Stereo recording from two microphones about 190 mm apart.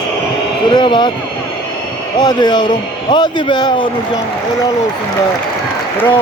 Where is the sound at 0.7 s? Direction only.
25° left (ahead or behind).